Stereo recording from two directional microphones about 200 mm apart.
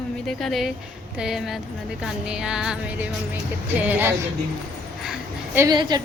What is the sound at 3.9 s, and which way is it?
A woman's voice, 10° right (ahead or behind).